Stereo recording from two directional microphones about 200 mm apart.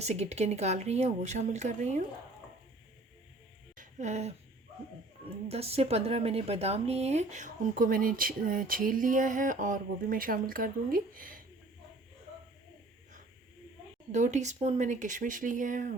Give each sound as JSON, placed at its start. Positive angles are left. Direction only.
{"t": 0.0, "sound": "speech", "side_deg": -35}
{"t": 3.8, "sound": "music", "side_deg": -35}
{"t": 5.2, "sound": "speech", "side_deg": -30}
{"t": 14.1, "sound": "speech", "side_deg": -35}